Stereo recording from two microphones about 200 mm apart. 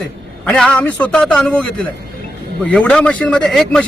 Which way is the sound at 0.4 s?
5° left (ahead or behind).